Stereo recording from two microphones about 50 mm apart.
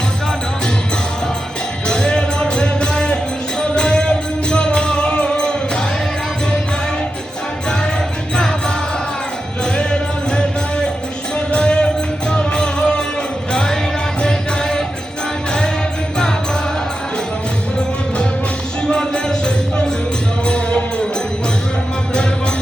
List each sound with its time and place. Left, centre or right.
1.9 s music: centre
8.4 s music: centre
9.7 s music: centre
18.9 s music: centre